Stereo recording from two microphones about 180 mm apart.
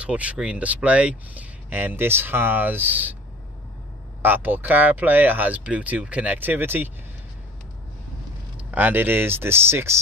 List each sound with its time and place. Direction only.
0.0 s speech: 5° right (ahead or behind)
4.2 s speech: 10° right (ahead or behind)
8.5 s speech: 10° right (ahead or behind)